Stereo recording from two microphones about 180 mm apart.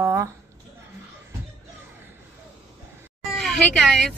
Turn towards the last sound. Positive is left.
turn(degrees=5)  # may be behind; listen again after turning